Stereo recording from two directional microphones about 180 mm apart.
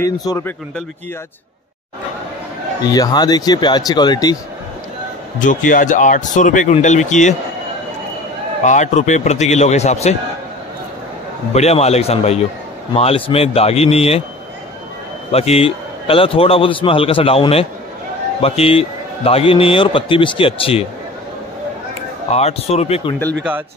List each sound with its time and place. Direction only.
0.0 s speech: 15° left (ahead or behind)
2.8 s speech: 20° left (ahead or behind)
5.4 s speech: 45° left (ahead or behind)
8.6 s a man's voice: 40° left (ahead or behind)
11.5 s a man's voice: 35° left (ahead or behind)
15.3 s a man's voice: 35° left (ahead or behind)
22.3 s a man's voice: 35° left (ahead or behind)